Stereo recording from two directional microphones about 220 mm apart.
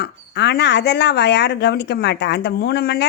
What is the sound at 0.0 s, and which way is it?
Speech, 50° left (ahead or behind).